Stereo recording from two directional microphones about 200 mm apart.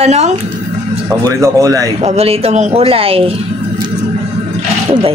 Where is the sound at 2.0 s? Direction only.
30° right (ahead or behind).